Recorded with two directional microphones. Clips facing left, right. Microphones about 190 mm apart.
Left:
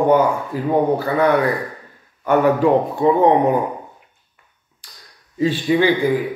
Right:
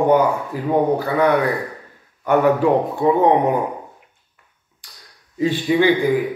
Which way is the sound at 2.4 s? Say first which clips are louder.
Left 1 dB; 15° left (ahead or behind).